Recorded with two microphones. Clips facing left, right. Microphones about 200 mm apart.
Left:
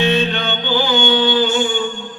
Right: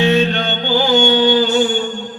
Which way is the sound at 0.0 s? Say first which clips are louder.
Right 3 dB; 40° right (ahead or behind).